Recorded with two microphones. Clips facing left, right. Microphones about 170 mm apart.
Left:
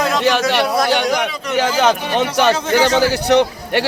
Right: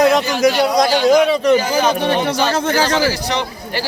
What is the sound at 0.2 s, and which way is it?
Speech, 80° left.